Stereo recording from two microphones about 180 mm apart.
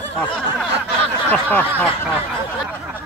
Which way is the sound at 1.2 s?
10° left (ahead or behind).